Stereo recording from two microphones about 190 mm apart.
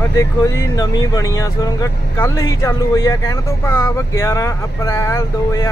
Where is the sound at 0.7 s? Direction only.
20° left (ahead or behind).